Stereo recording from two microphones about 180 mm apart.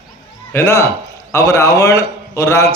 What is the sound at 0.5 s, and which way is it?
A man's voice, 15° left (ahead or behind).